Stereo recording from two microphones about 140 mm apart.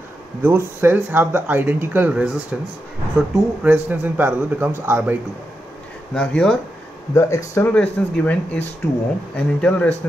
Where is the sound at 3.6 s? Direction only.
10° right (ahead or behind).